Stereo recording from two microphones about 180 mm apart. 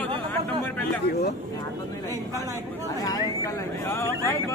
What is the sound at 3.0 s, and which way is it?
Speech, 20° left (ahead or behind).